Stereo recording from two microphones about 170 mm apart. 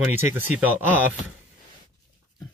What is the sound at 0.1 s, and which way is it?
Speech, 15° right (ahead or behind).